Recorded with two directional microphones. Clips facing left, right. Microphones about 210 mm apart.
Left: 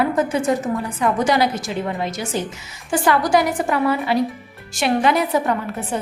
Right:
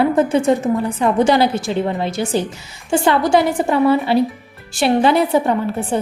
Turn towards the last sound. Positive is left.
turn(degrees=-30)  # may be behind; listen again after turning